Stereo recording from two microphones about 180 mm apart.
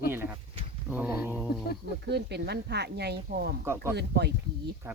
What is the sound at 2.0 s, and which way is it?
Speech, 65° right (ahead or behind).